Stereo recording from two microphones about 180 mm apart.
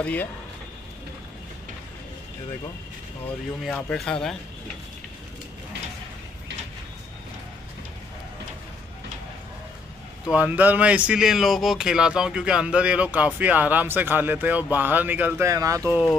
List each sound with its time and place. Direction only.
0.0 s speech: 10° left (ahead or behind)
3.7 s speech: 5° left (ahead or behind)
10.2 s speech: 5° right (ahead or behind)
15.9 s speech: 20° left (ahead or behind)